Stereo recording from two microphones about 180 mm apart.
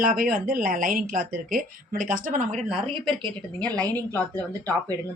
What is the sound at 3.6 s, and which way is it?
Speech, 5° left (ahead or behind).